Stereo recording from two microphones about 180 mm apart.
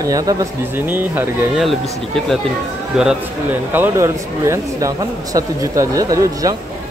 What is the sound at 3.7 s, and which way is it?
Speech, 15° right (ahead or behind).